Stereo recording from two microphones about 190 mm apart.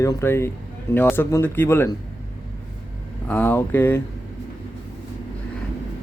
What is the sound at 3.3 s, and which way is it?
Speech, 10° left (ahead or behind).